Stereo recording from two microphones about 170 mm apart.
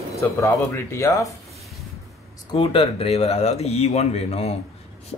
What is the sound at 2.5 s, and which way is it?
Speech, 30° left (ahead or behind).